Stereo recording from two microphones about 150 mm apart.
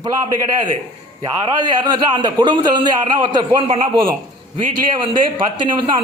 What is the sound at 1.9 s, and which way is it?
A man's voice, 30° right (ahead or behind).